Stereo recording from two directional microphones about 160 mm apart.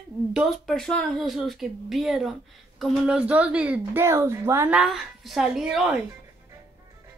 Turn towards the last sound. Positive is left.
turn(degrees=-5)  # may be behind; listen again after turning